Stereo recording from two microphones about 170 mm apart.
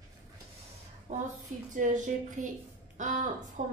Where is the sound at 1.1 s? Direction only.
45° right (ahead or behind).